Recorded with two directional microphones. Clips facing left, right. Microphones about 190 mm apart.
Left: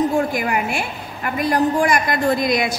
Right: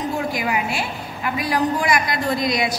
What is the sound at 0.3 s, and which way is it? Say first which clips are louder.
A woman's voice: left 2 dB; 50° left (ahead or behind).